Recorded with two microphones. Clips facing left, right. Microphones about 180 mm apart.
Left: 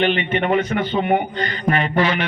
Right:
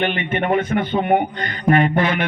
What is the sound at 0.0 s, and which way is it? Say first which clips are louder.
A man's voice: left 2 dB; 50° right (ahead or behind).